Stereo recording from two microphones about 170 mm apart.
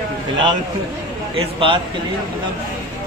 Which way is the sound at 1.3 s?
30° right (ahead or behind).